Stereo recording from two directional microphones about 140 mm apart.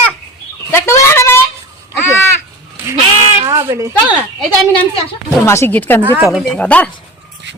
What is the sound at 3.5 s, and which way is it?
Speech, 20° right (ahead or behind).